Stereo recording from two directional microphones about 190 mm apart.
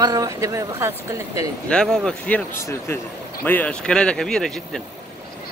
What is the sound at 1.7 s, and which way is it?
Speech, 5° left (ahead or behind).